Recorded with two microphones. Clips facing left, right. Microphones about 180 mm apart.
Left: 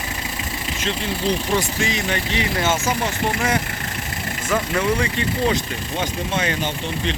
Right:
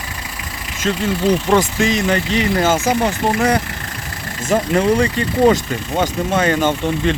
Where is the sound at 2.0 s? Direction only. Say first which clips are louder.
Right 6 dB; 35° right (ahead or behind).